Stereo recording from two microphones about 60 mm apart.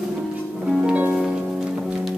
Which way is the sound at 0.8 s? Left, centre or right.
Right.